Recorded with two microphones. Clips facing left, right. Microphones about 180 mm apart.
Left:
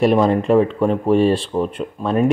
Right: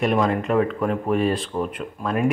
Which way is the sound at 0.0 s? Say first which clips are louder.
Left 6 dB; 30° left (ahead or behind).